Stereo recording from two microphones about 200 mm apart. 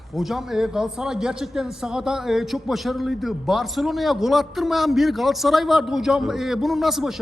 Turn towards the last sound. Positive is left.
turn(degrees=0)  # may be behind; listen again after turning